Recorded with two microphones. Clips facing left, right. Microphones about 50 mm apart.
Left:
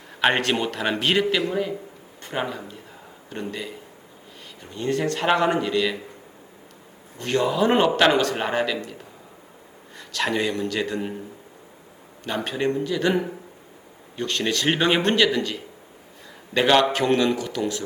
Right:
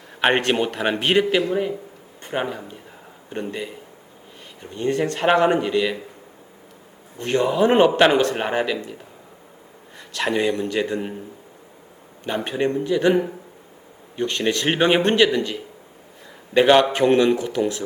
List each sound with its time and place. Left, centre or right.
0.2 s a man's voice: right
7.2 s a man's voice: centre
10.1 s speech: centre
12.2 s speech: centre
14.2 s speech: right
16.6 s a man's voice: centre